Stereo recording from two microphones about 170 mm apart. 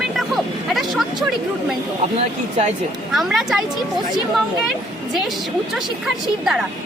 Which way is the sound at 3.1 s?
Centre (ahead or behind).